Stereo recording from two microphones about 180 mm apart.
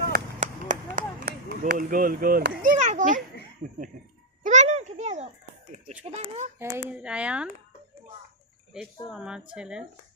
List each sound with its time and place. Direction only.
0.1 s a sound: 45° right (ahead or behind)
2.6 s a child's voice: 45° right (ahead or behind)
4.4 s a sound: 40° right (ahead or behind)
6.1 s a child's voice: 40° right (ahead or behind)
6.6 s speech: 15° right (ahead or behind)
9.0 s speech: 5° right (ahead or behind)